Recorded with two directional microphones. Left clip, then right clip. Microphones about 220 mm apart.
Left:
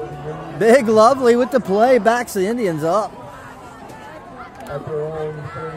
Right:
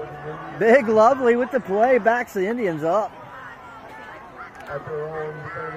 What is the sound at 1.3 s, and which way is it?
Speech, 15° left (ahead or behind).